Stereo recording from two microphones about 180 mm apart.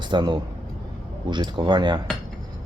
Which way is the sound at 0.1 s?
25° right (ahead or behind).